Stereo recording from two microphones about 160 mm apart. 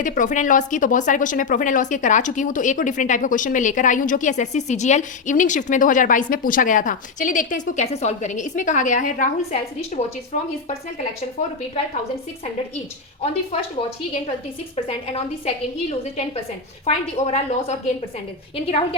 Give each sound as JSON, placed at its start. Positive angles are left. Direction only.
{"t": 0.0, "sound": "speech", "side_deg": 55}
{"t": 14.8, "sound": "a woman's voice", "side_deg": 40}